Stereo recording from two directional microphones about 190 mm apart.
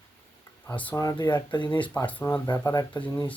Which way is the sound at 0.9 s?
20° left (ahead or behind).